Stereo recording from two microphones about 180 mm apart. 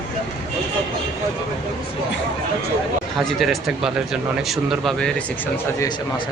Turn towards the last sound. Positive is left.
turn(degrees=0)  # may be behind; listen again after turning